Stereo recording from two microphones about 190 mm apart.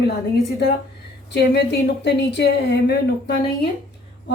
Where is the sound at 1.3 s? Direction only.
60° left (ahead or behind).